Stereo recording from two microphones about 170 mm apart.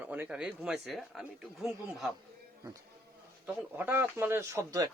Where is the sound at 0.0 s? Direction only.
10° right (ahead or behind).